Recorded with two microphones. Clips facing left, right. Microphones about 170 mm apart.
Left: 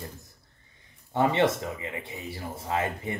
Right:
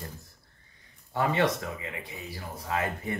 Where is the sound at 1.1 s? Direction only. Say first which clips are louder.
Left 3 dB; 25° left (ahead or behind).